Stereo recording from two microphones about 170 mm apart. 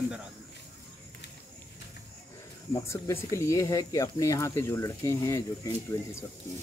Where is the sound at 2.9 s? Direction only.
15° left (ahead or behind).